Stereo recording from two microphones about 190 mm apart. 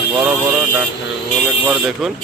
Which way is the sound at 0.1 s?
10° right (ahead or behind).